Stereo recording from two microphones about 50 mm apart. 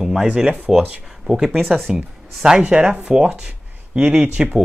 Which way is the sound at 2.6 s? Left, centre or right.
Centre.